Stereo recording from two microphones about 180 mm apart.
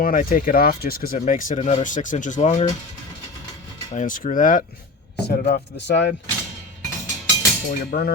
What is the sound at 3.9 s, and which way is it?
Speech, 45° left (ahead or behind).